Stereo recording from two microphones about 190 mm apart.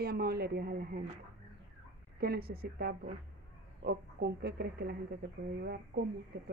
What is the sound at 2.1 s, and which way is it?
Speech, 55° right (ahead or behind).